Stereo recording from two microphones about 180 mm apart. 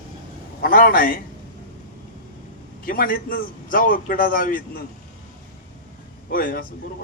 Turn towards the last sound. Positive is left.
turn(degrees=50)  # may be behind; listen again after turning